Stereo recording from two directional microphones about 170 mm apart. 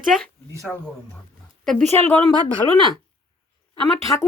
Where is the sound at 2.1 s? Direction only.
25° right (ahead or behind).